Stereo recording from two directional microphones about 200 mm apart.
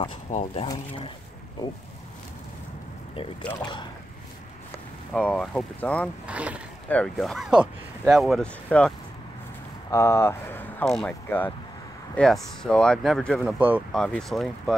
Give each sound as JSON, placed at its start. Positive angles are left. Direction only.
{"t": 0.3, "sound": "speech", "side_deg": 35}
{"t": 3.2, "sound": "speech", "side_deg": 25}
{"t": 5.1, "sound": "speech", "side_deg": 5}
{"t": 6.2, "sound": "speech", "side_deg": -5}
{"t": 13.6, "sound": "speech", "side_deg": -10}
{"t": 13.9, "sound": "speech", "side_deg": 5}